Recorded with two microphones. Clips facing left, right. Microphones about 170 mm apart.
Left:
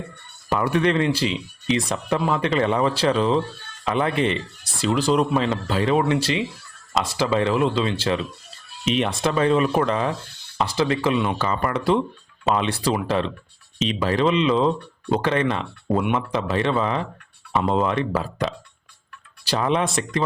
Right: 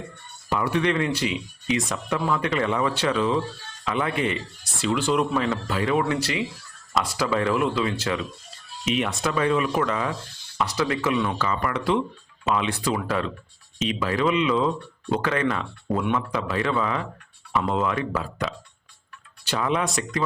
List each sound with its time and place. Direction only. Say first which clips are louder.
0.5 s speech: left 3 dB; 45° left (ahead or behind)
0.9 s speech: left 3 dB; 30° left (ahead or behind)
5.3 s speech: left 3 dB; 25° left (ahead or behind)